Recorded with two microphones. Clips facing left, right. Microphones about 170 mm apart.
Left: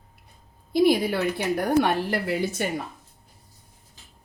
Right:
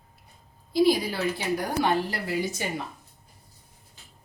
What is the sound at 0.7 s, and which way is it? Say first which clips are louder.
A woman's voice: left 2 dB; 55° left (ahead or behind).